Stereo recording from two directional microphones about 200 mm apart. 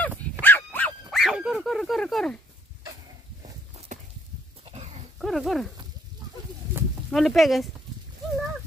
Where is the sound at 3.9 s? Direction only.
35° right (ahead or behind).